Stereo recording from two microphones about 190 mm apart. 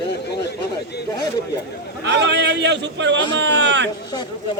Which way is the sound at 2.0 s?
65° right (ahead or behind).